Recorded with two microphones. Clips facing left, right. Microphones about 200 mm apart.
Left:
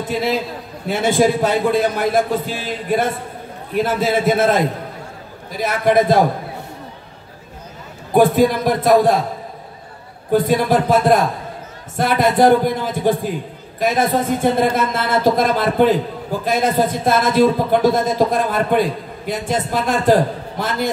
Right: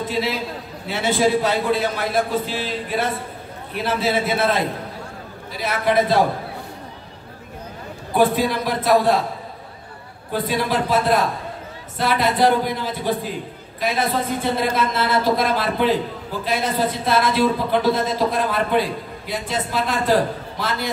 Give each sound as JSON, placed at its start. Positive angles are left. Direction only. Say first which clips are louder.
{"t": 0.8, "sound": "a man's voice", "louder": "left 4 dB", "side_deg": 50}
{"t": 8.1, "sound": "a man's voice", "louder": "left 5 dB", "side_deg": 45}
{"t": 10.3, "sound": "a man's voice", "louder": "left 7 dB", "side_deg": 50}